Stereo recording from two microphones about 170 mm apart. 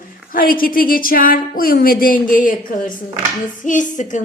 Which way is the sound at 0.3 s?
55° left (ahead or behind).